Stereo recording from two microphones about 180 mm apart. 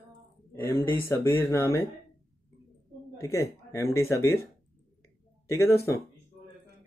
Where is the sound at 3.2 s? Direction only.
15° left (ahead or behind).